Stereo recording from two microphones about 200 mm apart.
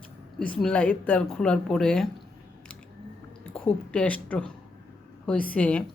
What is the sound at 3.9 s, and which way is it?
Speech, 5° left (ahead or behind).